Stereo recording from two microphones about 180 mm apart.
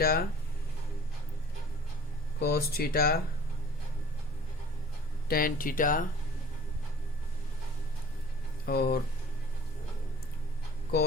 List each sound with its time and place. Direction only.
0.0 s speech: 60° left (ahead or behind)
2.4 s speech: 60° left (ahead or behind)
5.3 s speech: 55° left (ahead or behind)
8.6 s speech: 60° left (ahead or behind)